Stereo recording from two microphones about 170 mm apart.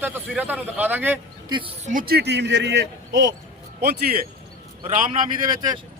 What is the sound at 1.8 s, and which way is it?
A man's voice, 50° right (ahead or behind).